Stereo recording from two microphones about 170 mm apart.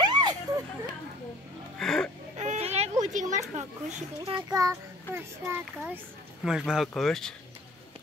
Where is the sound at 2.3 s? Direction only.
45° right (ahead or behind).